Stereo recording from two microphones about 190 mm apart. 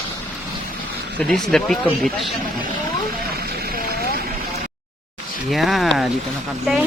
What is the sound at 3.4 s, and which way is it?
Vehicle, 55° right (ahead or behind).